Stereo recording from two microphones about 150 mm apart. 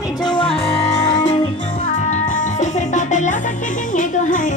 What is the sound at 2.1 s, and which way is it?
Music, 55° left (ahead or behind).